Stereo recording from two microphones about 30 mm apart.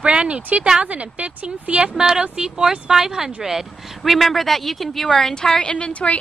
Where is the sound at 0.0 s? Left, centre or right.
Right.